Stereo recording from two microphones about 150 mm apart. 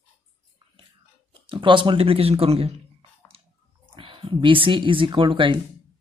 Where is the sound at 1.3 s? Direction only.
35° right (ahead or behind).